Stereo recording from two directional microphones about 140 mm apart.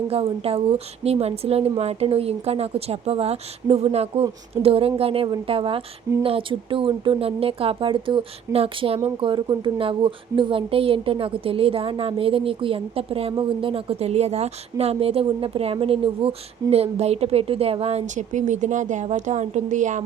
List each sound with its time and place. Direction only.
0.1 s a woman's voice: 45° right (ahead or behind); by 20.0 s 60° right (ahead or behind)